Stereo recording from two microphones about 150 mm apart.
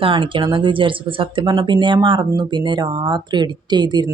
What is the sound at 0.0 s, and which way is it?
Speech, 35° right (ahead or behind).